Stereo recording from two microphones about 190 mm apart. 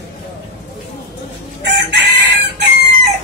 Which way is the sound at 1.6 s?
65° right (ahead or behind).